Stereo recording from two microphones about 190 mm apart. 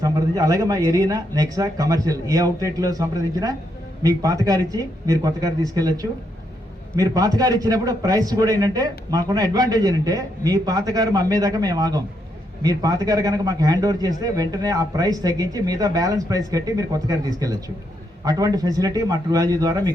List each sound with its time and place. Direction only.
0.0 s a man's voice: 15° right (ahead or behind)